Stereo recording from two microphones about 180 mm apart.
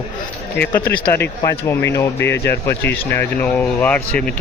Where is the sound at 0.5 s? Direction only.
10° left (ahead or behind).